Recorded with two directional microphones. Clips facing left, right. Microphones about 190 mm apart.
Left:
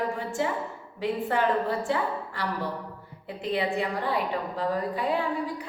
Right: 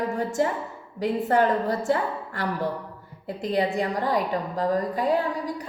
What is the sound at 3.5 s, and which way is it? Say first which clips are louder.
A woman's voice: right 3 dB; 40° right (ahead or behind).